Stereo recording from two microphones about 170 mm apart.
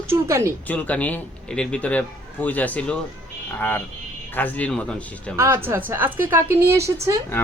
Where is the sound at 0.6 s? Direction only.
10° left (ahead or behind).